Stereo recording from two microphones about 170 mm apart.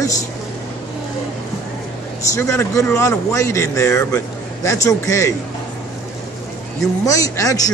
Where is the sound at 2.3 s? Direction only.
15° left (ahead or behind).